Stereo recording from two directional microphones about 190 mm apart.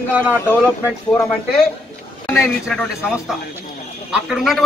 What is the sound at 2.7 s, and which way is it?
A man's voice, 5° right (ahead or behind).